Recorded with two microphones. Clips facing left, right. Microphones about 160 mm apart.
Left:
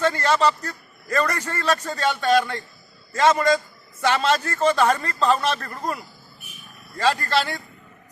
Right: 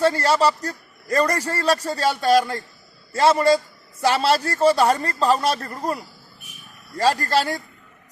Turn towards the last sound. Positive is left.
turn(degrees=-40)  # may be behind; listen again after turning